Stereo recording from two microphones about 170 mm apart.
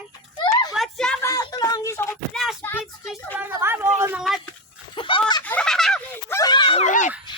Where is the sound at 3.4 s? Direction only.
15° right (ahead or behind).